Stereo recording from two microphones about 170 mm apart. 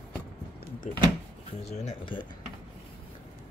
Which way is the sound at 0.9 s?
45° left (ahead or behind).